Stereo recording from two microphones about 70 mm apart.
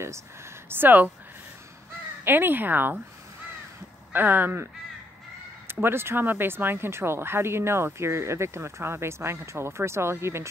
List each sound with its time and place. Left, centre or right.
0.7 s speech: right
2.2 s speech: right
4.1 s speech: right
5.7 s speech: right